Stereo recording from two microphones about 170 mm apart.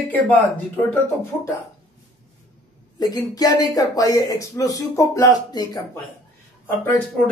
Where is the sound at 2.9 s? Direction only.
25° left (ahead or behind).